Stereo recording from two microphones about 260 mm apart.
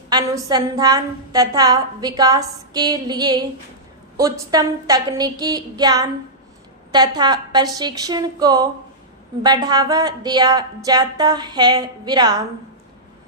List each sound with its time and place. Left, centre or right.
0.1 s a woman's voice: centre